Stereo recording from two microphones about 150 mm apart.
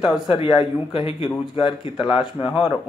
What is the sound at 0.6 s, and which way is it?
Speech, 40° left (ahead or behind).